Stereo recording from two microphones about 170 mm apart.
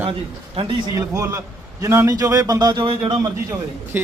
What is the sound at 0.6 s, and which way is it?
Speech, 30° right (ahead or behind).